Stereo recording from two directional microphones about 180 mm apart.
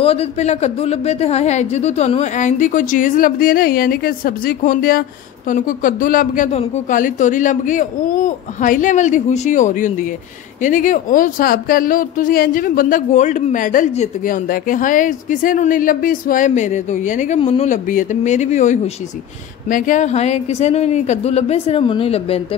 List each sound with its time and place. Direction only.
0.0 s speech: 35° left (ahead or behind)